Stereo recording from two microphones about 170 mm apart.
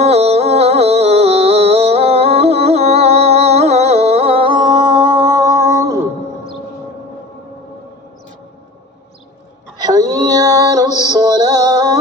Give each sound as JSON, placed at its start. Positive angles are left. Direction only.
{"t": 0.0, "sound": "music", "side_deg": -40}
{"t": 9.8, "sound": "female singing", "side_deg": -20}
{"t": 11.0, "sound": "music", "side_deg": -25}